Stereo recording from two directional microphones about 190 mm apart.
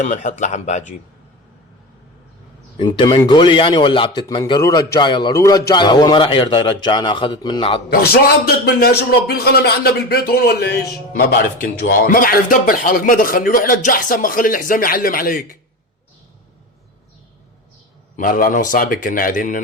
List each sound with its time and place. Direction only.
0.0 s speech: 40° left (ahead or behind)
2.7 s a man's voice: 25° left (ahead or behind)
7.9 s a man's voice: 55° left (ahead or behind)
18.2 s speech: 45° left (ahead or behind)